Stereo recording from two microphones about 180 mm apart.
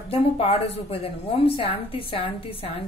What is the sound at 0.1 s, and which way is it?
A woman's voice, 30° left (ahead or behind).